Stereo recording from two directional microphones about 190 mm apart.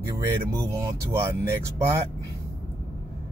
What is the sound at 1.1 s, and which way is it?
Speech, 15° right (ahead or behind).